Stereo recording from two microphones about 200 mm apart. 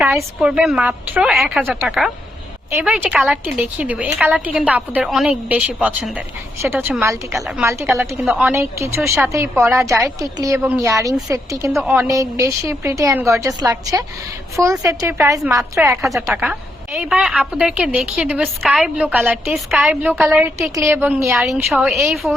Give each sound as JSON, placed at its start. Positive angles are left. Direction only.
{"t": 0.2, "sound": "a woman's voice", "side_deg": -5}
{"t": 16.0, "sound": "a woman's voice", "side_deg": 0}
{"t": 20.6, "sound": "a woman's voice", "side_deg": -15}
{"t": 21.3, "sound": "a woman's voice", "side_deg": 0}